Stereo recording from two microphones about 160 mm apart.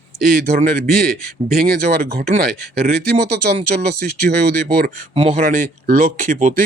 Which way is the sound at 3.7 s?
60° right (ahead or behind).